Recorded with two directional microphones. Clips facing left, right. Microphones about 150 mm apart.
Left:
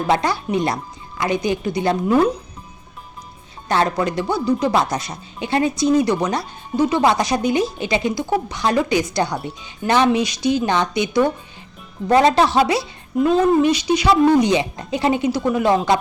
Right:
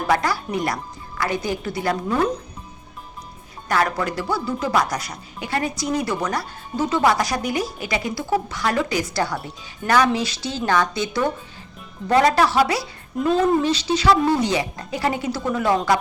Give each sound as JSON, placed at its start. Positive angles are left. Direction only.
{"t": 0.1, "sound": "speech", "side_deg": 25}
{"t": 3.7, "sound": "speech", "side_deg": 25}
{"t": 13.1, "sound": "speech", "side_deg": 0}
{"t": 13.6, "sound": "speech", "side_deg": 15}